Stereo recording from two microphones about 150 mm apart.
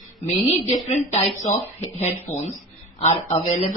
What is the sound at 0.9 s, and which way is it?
Speech, 45° left (ahead or behind).